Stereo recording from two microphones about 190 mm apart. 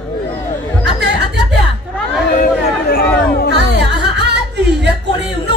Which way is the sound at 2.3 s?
50° left (ahead or behind).